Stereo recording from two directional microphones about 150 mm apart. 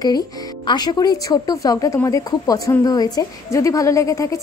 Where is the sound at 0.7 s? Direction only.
25° left (ahead or behind).